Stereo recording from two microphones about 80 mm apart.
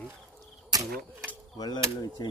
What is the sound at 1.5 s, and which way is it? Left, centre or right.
Speech, left.